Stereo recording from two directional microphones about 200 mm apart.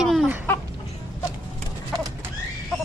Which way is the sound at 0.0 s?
Centre (ahead or behind).